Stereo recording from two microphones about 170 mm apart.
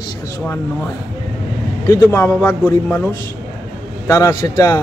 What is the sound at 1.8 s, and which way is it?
A man's voice, 20° left (ahead or behind).